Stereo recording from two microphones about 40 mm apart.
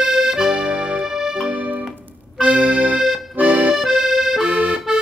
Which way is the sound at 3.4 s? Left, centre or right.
Right.